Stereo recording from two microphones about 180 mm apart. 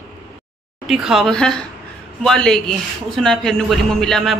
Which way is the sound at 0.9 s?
Centre (ahead or behind).